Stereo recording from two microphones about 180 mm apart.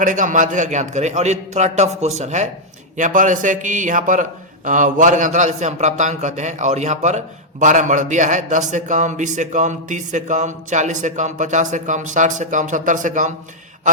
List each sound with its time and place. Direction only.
0.0 s a man's voice: 45° right (ahead or behind)